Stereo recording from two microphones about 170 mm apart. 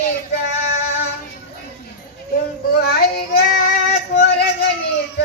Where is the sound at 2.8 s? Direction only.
65° left (ahead or behind).